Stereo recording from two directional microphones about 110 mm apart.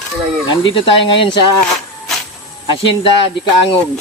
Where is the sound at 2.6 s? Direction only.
50° left (ahead or behind).